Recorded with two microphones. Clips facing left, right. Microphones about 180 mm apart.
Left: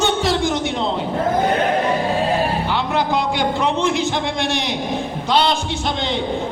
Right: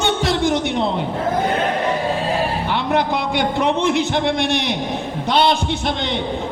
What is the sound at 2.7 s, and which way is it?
A man's voice, 60° right (ahead or behind).